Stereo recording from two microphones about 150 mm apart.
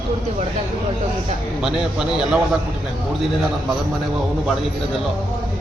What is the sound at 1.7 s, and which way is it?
Speech, 5° right (ahead or behind).